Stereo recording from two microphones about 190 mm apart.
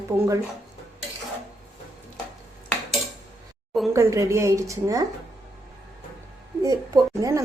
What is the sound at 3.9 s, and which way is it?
A woman's voice, 15° right (ahead or behind).